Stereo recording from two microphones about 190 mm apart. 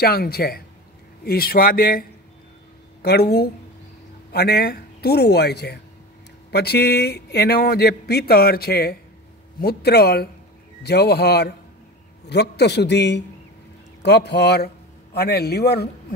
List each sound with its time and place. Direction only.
0.0 s a man's voice: 55° left (ahead or behind)